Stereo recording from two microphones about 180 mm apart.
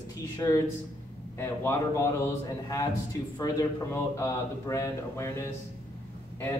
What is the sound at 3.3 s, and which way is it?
A man's voice, 20° left (ahead or behind).